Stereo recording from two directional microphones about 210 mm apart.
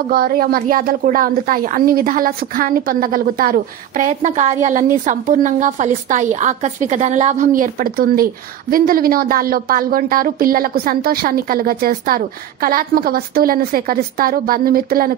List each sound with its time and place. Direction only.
0.1 s a woman's voice: 45° right (ahead or behind)